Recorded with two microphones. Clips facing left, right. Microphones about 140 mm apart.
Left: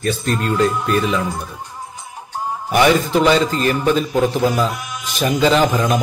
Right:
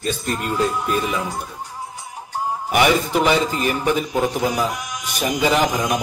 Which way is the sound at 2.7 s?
15° right (ahead or behind).